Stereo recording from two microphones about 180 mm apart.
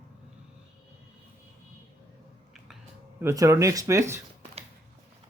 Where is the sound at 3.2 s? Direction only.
15° right (ahead or behind).